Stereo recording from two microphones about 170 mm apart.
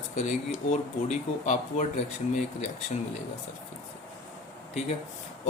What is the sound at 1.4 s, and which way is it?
Speech, 45° left (ahead or behind).